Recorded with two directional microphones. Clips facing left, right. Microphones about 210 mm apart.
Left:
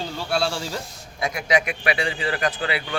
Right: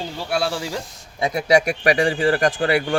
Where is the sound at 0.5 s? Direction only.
15° right (ahead or behind).